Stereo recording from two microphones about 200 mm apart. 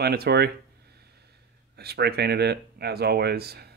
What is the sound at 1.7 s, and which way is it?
Speech, 55° right (ahead or behind).